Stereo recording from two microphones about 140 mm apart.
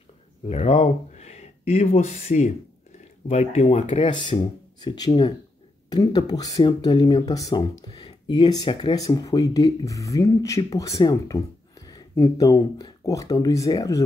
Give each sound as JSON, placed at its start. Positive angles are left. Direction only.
{"t": 0.5, "sound": "speech", "side_deg": 50}
{"t": 8.9, "sound": "speech", "side_deg": 25}